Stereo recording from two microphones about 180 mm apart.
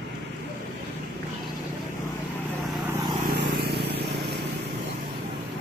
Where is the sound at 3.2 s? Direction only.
65° right (ahead or behind).